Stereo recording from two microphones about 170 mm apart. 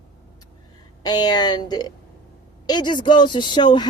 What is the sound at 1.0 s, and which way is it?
Speech, 25° left (ahead or behind).